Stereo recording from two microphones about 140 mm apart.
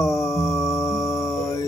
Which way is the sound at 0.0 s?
20° left (ahead or behind).